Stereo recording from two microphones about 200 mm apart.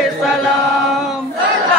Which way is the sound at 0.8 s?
Centre (ahead or behind).